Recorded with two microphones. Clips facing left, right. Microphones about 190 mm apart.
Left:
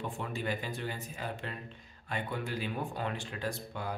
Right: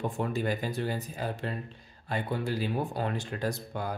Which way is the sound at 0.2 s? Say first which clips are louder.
Right 6 dB; 40° right (ahead or behind).